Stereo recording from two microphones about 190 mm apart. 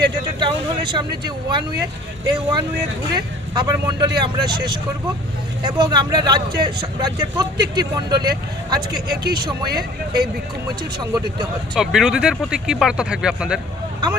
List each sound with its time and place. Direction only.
0.0 s speech: 25° right (ahead or behind)
10.9 s speech: 25° right (ahead or behind)
11.7 s speech: centre (ahead or behind)